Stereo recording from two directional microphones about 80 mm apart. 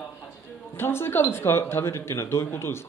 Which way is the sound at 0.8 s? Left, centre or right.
Left.